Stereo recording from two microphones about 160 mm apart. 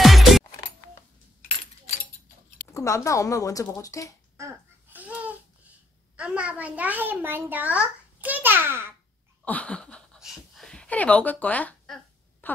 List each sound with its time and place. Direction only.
0.0 s music: centre (ahead or behind)
2.7 s speech: 20° left (ahead or behind)
4.4 s babbling: 15° right (ahead or behind)
6.1 s a child's voice: 5° right (ahead or behind)
9.4 s a sound: 10° left (ahead or behind)